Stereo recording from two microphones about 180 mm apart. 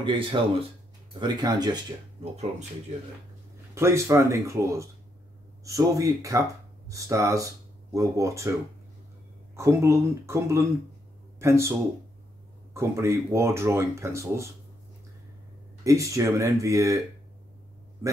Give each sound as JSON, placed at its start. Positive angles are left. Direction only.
{"t": 0.0, "sound": "speech", "side_deg": -25}
{"t": 3.7, "sound": "speech", "side_deg": -15}
{"t": 9.6, "sound": "speech", "side_deg": -15}
{"t": 12.7, "sound": "speech", "side_deg": -15}
{"t": 15.8, "sound": "speech", "side_deg": -15}